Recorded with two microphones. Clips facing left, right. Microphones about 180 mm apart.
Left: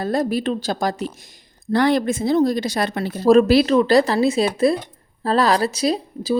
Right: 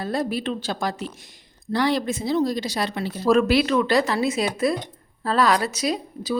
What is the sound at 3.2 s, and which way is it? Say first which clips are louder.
A woman's voice: left 5 dB; 35° left (ahead or behind).